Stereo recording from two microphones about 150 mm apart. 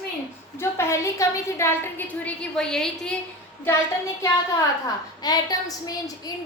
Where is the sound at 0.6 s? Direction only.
20° left (ahead or behind).